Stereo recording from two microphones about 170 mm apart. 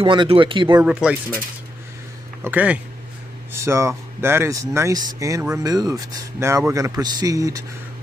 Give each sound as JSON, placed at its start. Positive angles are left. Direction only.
{"t": 0.0, "sound": "speech", "side_deg": -30}
{"t": 0.8, "sound": "speech", "side_deg": -5}
{"t": 2.4, "sound": "speech", "side_deg": -10}